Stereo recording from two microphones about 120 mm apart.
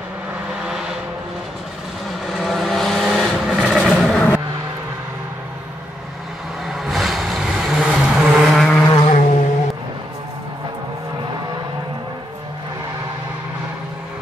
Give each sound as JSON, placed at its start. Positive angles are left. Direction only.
{"t": 2.3, "sound": "vehicle", "side_deg": 0}
{"t": 6.7, "sound": "vehicle", "side_deg": 0}
{"t": 9.0, "sound": "a sound", "side_deg": 90}